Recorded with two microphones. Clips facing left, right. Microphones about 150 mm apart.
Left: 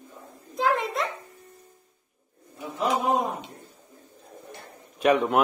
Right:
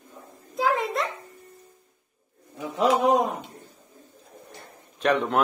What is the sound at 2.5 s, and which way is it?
Pigeon, 90° right.